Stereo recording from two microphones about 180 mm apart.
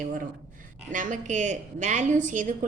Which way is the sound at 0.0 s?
45° right (ahead or behind).